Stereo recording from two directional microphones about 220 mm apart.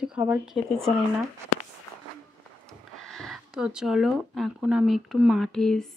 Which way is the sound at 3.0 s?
Centre (ahead or behind).